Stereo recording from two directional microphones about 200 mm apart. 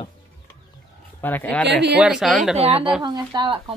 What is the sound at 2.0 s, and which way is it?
Speech, 5° right (ahead or behind).